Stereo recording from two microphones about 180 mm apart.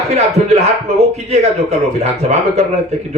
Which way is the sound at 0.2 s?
35° right (ahead or behind).